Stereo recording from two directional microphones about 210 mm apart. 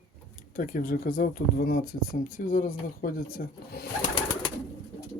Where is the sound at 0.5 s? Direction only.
40° left (ahead or behind).